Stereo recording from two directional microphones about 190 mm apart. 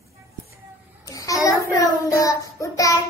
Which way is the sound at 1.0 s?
20° left (ahead or behind).